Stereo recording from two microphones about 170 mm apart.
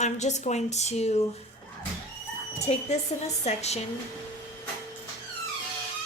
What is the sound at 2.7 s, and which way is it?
Speech, 35° left (ahead or behind).